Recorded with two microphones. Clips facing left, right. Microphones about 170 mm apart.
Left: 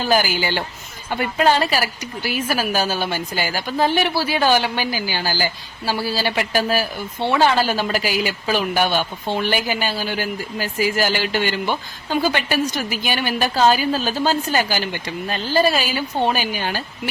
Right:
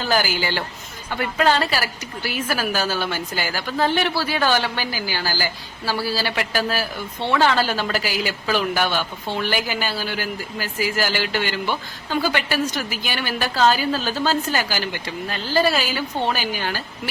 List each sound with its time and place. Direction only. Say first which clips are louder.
0.0 s a woman's voice: left 3 dB; 15° left (ahead or behind)